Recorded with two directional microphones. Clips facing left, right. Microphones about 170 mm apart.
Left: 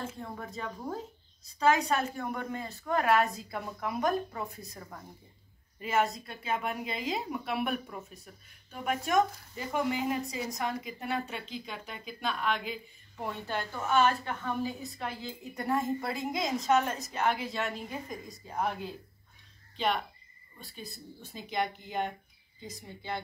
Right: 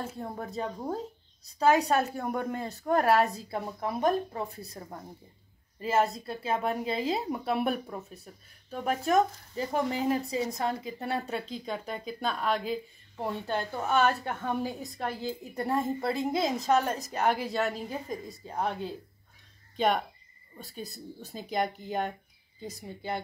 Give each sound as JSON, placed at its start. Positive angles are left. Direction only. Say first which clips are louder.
{"t": 0.0, "sound": "a woman's voice", "louder": "right 3 dB", "side_deg": -35}
{"t": 15.5, "sound": "a woman's voice", "louder": "even", "side_deg": -30}
{"t": 19.8, "sound": "a woman's voice", "louder": "right 4 dB", "side_deg": -45}